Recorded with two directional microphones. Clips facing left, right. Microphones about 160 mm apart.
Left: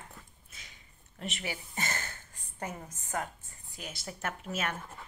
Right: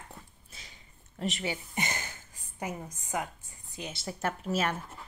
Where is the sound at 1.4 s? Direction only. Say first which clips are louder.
Right 4 dB; 20° right (ahead or behind).